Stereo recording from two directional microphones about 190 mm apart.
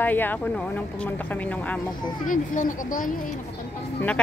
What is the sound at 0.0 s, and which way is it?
Speech, 10° left (ahead or behind).